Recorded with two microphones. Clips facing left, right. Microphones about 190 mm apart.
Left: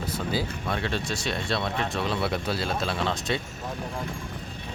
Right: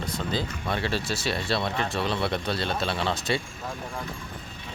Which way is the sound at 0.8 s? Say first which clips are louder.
Right 1 dB; 5° right (ahead or behind).